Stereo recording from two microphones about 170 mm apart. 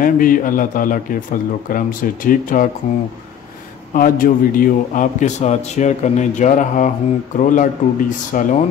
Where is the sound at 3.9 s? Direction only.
55° left (ahead or behind).